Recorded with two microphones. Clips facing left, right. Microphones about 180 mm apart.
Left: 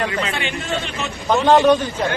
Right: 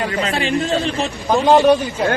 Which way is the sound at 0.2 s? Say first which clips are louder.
Right 6 dB; 35° right (ahead or behind).